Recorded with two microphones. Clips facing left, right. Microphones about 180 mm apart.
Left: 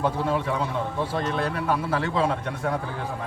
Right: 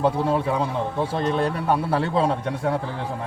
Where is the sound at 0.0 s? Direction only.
35° right (ahead or behind).